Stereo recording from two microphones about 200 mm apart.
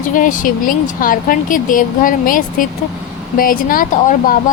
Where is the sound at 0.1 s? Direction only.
40° left (ahead or behind).